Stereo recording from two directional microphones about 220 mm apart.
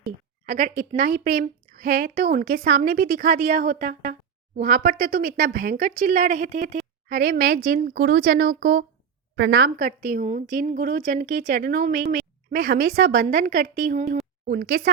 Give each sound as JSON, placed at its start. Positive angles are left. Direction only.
{"t": 0.4, "sound": "a woman's voice", "side_deg": -45}
{"t": 9.3, "sound": "a woman's voice", "side_deg": -60}
{"t": 9.6, "sound": "speech", "side_deg": -40}